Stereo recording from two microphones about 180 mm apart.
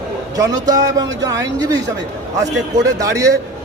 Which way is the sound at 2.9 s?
20° right (ahead or behind).